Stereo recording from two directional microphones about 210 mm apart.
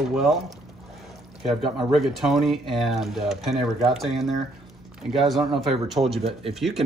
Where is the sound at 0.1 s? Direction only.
Centre (ahead or behind).